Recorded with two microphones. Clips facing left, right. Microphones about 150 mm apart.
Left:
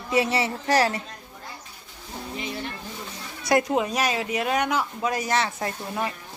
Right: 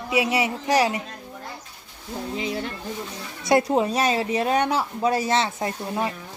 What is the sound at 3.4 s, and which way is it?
Speech, 30° right (ahead or behind).